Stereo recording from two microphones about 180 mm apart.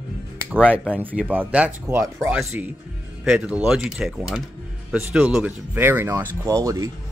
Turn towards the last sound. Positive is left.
turn(degrees=-20)  # may be behind; listen again after turning